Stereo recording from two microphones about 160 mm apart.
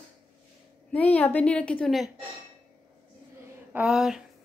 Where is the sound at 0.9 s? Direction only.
10° left (ahead or behind).